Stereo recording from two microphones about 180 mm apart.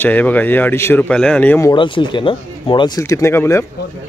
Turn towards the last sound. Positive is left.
turn(degrees=15)  # may be behind; listen again after turning